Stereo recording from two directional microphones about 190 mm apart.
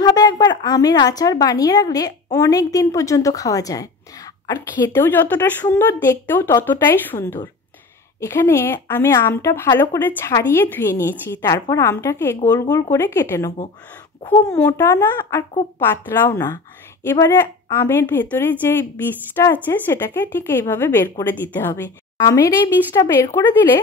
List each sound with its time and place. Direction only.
0.0 s a woman's voice: 20° left (ahead or behind)